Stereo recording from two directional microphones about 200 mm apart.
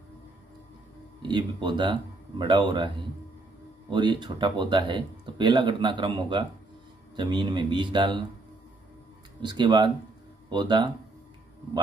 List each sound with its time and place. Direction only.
1.2 s speech: 25° right (ahead or behind)
3.9 s speech: 20° right (ahead or behind)
9.4 s speech: 20° right (ahead or behind)